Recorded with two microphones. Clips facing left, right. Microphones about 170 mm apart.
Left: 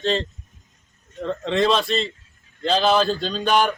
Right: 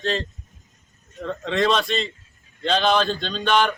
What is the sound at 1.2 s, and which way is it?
A man's voice, centre (ahead or behind).